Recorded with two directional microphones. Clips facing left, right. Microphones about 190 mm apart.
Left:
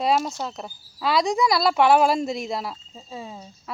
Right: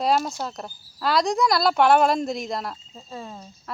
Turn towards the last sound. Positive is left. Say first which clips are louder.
# even
turn(degrees=10)  # may be behind; listen again after turning